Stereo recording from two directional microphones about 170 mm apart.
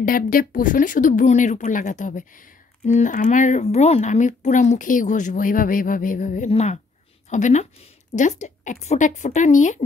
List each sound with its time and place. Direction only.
0.0 s speech: 55° left (ahead or behind)